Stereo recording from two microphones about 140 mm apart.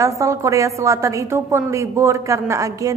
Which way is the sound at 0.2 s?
20° right (ahead or behind).